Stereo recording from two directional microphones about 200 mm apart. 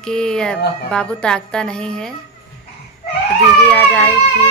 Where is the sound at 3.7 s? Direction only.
5° left (ahead or behind).